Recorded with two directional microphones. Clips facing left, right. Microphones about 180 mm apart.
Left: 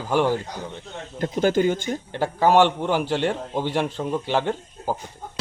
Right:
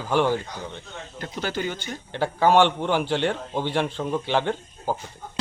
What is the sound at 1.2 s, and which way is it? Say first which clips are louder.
Speech: left 9 dB; 45° left (ahead or behind).